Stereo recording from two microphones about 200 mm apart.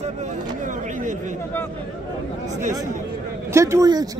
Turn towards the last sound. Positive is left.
turn(degrees=-20)  # may be behind; listen again after turning